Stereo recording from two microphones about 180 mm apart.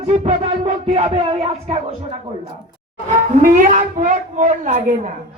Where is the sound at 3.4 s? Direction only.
45° right (ahead or behind).